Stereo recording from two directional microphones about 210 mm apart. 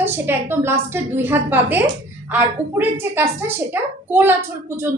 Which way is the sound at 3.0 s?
10° right (ahead or behind).